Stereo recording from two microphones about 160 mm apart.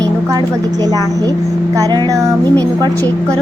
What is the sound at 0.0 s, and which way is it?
A woman's voice, 25° right (ahead or behind).